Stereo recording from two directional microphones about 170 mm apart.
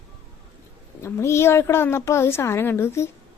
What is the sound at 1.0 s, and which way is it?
Speech, 15° left (ahead or behind).